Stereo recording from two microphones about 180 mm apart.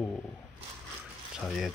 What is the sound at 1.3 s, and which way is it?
Speech, centre (ahead or behind).